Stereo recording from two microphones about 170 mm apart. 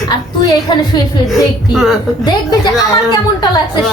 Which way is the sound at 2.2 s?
25° left (ahead or behind).